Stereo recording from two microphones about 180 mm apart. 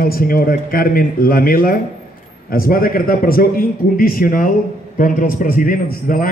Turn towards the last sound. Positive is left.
turn(degrees=50)  # may be behind; listen again after turning